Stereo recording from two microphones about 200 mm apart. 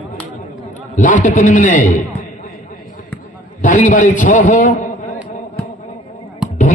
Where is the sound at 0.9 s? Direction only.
40° left (ahead or behind).